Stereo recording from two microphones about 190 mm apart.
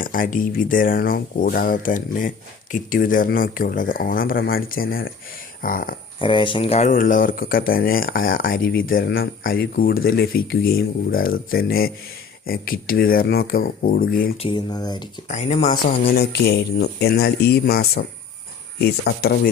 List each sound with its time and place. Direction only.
0.0 s speech: 45° left (ahead or behind)
6.1 s speech: 25° left (ahead or behind)
6.9 s speech: 45° left (ahead or behind)
14.3 s speech: 25° left (ahead or behind)
15.3 s speech: 35° left (ahead or behind)
15.7 s speech: 55° left (ahead or behind)